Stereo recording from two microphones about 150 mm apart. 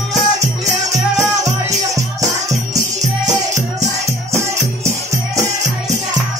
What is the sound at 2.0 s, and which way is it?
Music, 20° right (ahead or behind).